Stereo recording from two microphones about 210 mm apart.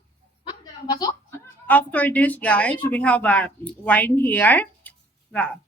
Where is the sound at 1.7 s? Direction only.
5° left (ahead or behind).